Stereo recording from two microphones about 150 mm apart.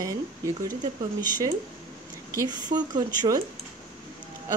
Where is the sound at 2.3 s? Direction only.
30° right (ahead or behind).